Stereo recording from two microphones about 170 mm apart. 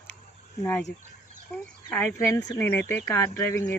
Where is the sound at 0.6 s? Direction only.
10° left (ahead or behind).